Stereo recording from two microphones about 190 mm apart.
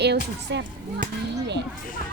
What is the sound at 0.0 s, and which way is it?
A child's voice, 60° right (ahead or behind).